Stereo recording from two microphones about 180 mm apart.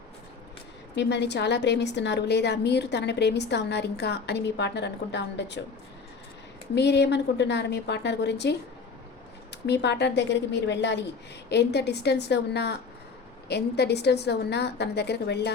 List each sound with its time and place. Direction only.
0.9 s a woman's voice: 70° left (ahead or behind)
6.7 s a woman's voice: 70° left (ahead or behind)
9.6 s a woman's voice: 70° left (ahead or behind)